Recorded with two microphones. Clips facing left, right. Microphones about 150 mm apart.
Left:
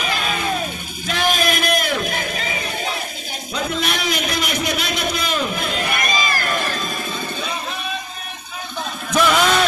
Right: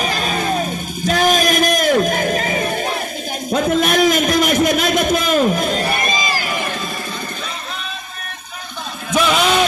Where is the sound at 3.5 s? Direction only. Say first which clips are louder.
Right 8 dB; 50° right (ahead or behind); by 6.6 s 10° right (ahead or behind).